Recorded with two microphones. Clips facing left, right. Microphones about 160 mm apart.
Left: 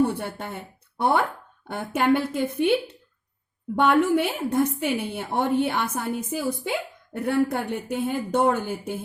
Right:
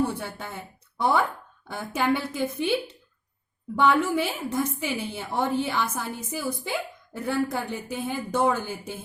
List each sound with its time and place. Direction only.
0.1 s a woman's voice: 60° left (ahead or behind)